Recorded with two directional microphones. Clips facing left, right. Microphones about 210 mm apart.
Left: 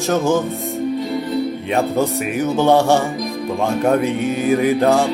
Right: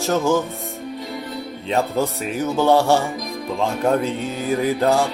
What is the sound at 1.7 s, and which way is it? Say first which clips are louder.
Music: left 2 dB; 15° left (ahead or behind).